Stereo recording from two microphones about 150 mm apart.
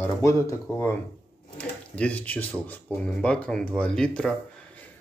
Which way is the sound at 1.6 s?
10° left (ahead or behind).